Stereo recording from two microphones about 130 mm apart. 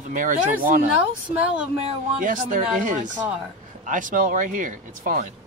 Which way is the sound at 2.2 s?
90° right.